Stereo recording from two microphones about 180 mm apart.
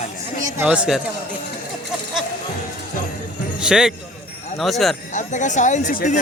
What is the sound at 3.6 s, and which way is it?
A man's voice, 5° right (ahead or behind).